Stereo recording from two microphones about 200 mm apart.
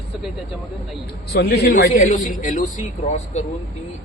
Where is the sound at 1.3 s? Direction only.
55° left (ahead or behind).